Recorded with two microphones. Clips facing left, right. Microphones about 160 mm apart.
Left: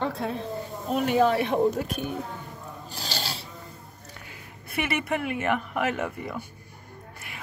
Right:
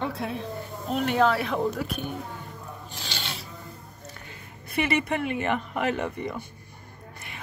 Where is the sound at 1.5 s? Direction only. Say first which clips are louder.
Left 3 dB; 45° left (ahead or behind).